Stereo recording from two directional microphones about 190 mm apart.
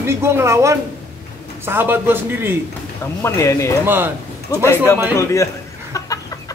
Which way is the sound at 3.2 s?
15° left (ahead or behind).